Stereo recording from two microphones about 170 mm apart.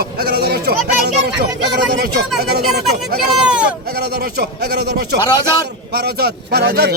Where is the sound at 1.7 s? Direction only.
70° right (ahead or behind).